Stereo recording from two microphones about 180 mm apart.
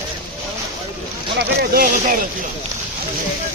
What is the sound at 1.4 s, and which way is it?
Speech, 55° right (ahead or behind).